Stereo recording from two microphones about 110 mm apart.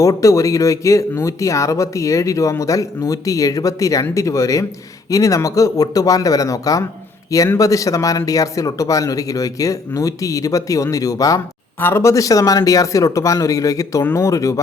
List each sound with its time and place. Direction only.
0.0 s speech: 30° left (ahead or behind)